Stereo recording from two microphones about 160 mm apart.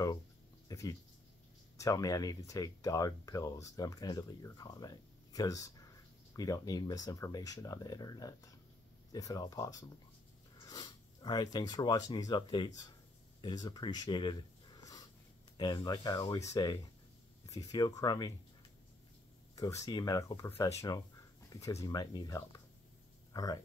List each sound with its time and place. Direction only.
0.7 s speech: 25° left (ahead or behind)
15.5 s speech: 25° left (ahead or behind)
19.5 s speech: 20° left (ahead or behind)